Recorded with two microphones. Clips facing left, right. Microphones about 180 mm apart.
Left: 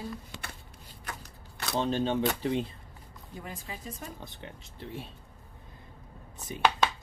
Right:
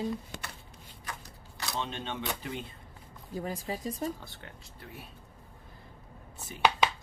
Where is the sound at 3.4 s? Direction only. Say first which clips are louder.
Right 7 dB; 40° right (ahead or behind).